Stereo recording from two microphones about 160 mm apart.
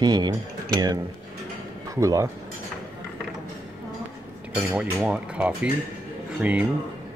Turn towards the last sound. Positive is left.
turn(degrees=-5)  # may be behind; listen again after turning